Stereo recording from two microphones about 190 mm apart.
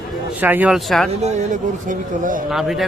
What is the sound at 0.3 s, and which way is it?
Speech, 10° right (ahead or behind).